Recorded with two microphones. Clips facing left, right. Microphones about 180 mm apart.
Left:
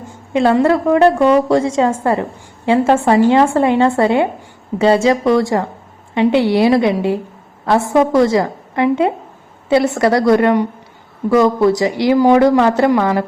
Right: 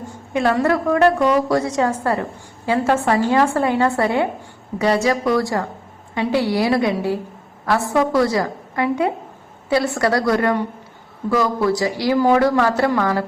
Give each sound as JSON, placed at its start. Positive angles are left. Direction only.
{"t": 0.3, "sound": "speech", "side_deg": 25}